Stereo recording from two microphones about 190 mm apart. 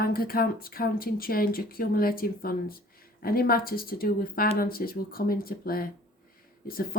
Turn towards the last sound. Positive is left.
turn(degrees=50)  # may be behind; listen again after turning